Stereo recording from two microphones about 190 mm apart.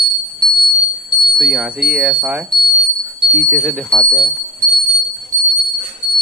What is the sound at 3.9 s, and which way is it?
Speech, 25° left (ahead or behind).